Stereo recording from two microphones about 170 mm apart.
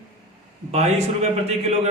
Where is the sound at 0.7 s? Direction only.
40° right (ahead or behind).